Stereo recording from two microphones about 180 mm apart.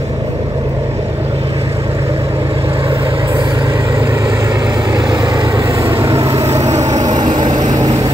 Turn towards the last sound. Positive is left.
turn(degrees=-20)  # may be behind; listen again after turning